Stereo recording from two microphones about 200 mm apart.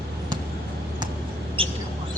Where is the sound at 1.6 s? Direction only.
25° right (ahead or behind).